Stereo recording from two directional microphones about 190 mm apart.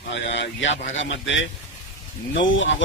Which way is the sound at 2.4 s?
80° left.